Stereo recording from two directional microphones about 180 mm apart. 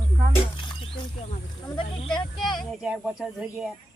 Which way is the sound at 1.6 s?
20° left (ahead or behind).